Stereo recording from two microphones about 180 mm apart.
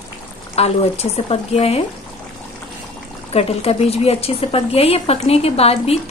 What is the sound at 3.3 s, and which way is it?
A woman's voice, 35° left (ahead or behind).